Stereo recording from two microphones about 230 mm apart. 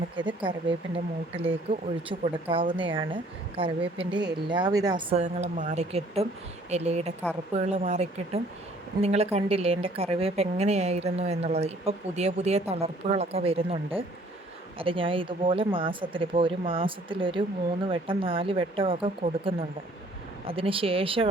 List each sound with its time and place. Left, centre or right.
1.4 s a woman's voice: right
4.2 s speech: right
4.5 s a woman's voice: centre